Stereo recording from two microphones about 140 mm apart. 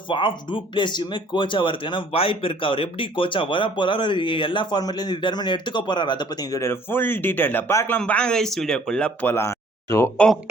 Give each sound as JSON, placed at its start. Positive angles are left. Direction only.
{"t": 0.1, "sound": "speech", "side_deg": 35}
{"t": 9.3, "sound": "speech", "side_deg": 20}